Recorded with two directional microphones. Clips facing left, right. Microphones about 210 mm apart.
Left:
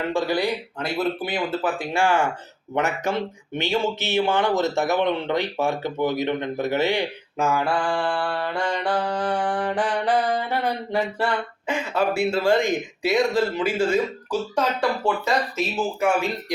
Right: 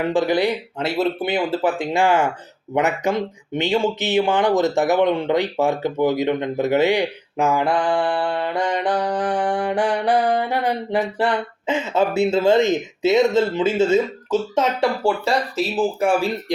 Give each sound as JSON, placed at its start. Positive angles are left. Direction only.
{"t": 0.0, "sound": "speech", "side_deg": -15}